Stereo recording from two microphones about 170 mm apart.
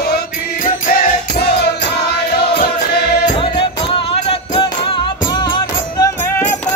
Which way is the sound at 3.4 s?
35° left (ahead or behind).